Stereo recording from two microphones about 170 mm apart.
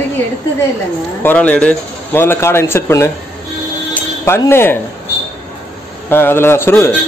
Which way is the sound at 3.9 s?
15° left (ahead or behind).